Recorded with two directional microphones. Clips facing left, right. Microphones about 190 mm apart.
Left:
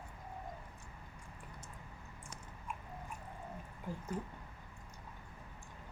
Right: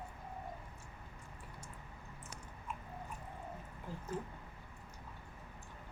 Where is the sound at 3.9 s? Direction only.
15° left (ahead or behind).